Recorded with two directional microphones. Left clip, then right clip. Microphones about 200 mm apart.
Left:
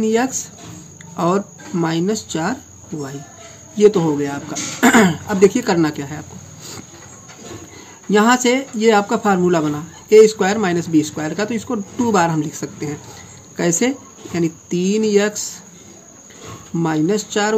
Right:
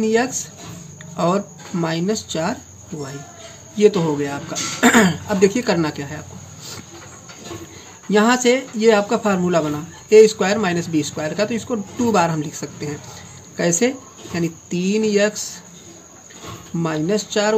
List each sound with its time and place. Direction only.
0.0 s speech: 25° left (ahead or behind)
8.1 s speech: 25° left (ahead or behind)
16.8 s speech: 25° left (ahead or behind)